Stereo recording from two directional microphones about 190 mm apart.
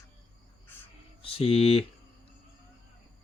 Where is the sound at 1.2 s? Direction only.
30° left (ahead or behind).